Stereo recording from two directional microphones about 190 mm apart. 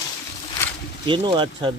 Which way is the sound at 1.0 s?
25° right (ahead or behind).